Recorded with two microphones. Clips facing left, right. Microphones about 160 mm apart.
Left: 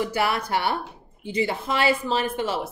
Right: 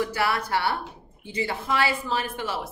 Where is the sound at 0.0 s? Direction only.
20° left (ahead or behind).